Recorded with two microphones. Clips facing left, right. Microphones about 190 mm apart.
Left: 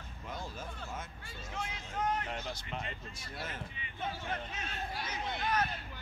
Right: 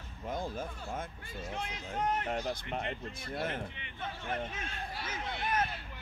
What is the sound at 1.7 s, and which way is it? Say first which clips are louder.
Speech: right 1 dB; 40° right (ahead or behind).